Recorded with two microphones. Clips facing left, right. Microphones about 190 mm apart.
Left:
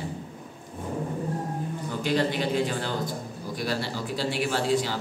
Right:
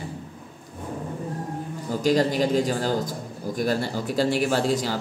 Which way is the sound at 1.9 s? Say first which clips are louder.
Right 5 dB; 40° right (ahead or behind).